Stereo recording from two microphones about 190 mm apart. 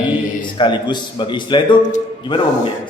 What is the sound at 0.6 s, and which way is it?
A man's voice, 25° left (ahead or behind).